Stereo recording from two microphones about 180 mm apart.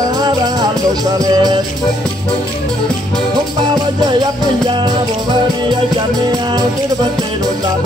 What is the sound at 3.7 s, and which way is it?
Music, 25° right (ahead or behind).